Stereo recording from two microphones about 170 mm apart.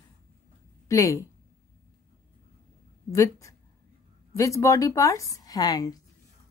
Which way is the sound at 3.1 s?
15° left (ahead or behind).